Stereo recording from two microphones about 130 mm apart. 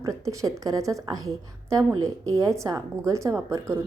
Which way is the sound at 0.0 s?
25° right (ahead or behind).